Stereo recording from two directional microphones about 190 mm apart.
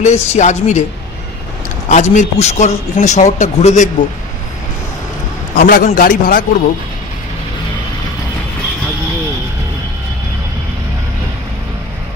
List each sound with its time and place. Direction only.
0.0 s a man's voice: 35° left (ahead or behind)
1.9 s a man's voice: 40° left (ahead or behind)
5.6 s a man's voice: 50° left (ahead or behind)